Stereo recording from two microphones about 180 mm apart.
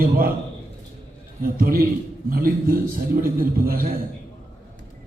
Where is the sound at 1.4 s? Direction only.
55° right (ahead or behind).